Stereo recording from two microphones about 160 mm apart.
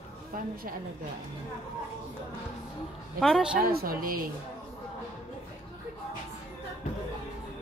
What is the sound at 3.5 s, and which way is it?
Speech, 65° right (ahead or behind).